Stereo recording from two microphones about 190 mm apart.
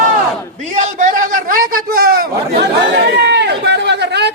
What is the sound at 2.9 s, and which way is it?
Chatter, 60° right (ahead or behind).